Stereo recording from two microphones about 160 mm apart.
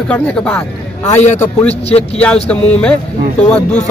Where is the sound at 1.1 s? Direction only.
45° left (ahead or behind).